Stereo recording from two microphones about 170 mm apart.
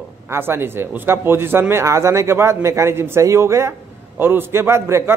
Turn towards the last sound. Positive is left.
turn(degrees=-15)  # may be behind; listen again after turning